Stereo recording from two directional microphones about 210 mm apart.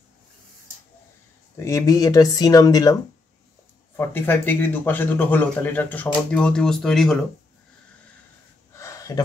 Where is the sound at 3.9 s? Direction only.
10° left (ahead or behind).